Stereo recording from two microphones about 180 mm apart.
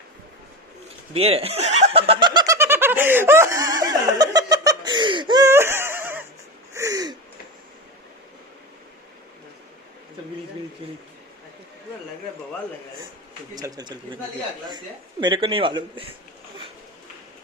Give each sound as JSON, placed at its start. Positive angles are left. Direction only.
{"t": 1.1, "sound": "snicker", "side_deg": -35}
{"t": 6.7, "sound": "gasp", "side_deg": -20}
{"t": 13.6, "sound": "a man's voice", "side_deg": -20}
{"t": 15.2, "sound": "a man's voice", "side_deg": -30}